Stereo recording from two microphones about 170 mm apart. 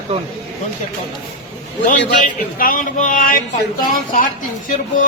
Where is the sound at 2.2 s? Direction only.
55° left (ahead or behind).